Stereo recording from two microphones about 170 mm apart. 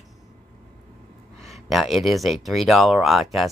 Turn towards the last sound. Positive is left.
turn(degrees=0)  # may be behind; listen again after turning